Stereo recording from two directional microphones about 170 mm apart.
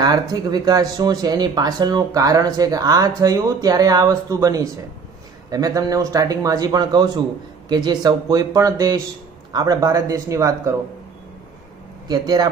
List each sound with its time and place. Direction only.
0.0 s speech: 25° right (ahead or behind)
12.1 s speech: 25° right (ahead or behind)